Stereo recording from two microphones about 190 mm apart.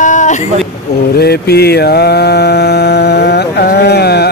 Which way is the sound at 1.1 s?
55° left (ahead or behind).